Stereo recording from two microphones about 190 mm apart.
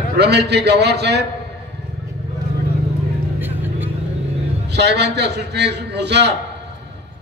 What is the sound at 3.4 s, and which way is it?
Vehicle, 10° right (ahead or behind).